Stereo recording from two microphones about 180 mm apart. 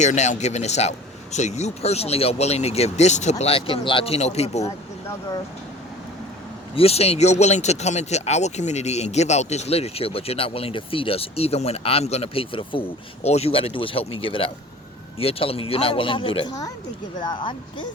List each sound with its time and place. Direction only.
0.0 s speech: 40° left (ahead or behind)
6.7 s speech: 35° left (ahead or behind)